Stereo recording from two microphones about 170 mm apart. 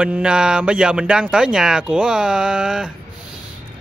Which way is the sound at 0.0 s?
5° right (ahead or behind).